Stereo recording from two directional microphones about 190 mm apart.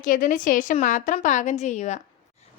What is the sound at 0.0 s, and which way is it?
A woman's voice, 45° left (ahead or behind).